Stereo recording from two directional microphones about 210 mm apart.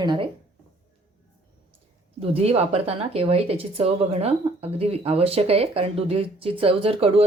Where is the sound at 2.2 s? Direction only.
30° right (ahead or behind).